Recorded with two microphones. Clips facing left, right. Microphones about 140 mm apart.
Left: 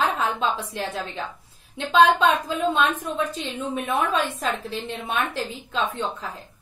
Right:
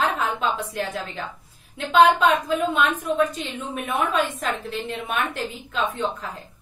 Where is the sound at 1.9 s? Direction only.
30° left (ahead or behind).